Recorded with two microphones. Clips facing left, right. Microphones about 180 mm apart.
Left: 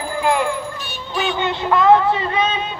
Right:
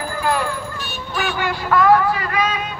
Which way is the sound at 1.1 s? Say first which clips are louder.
Left 2 dB; 20° left (ahead or behind).